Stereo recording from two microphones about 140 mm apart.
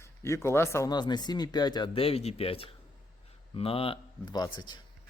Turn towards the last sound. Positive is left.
turn(degrees=30)  # may be behind; listen again after turning